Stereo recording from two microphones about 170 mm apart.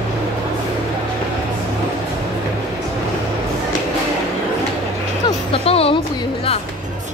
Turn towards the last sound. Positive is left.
turn(degrees=35)  # may be behind; listen again after turning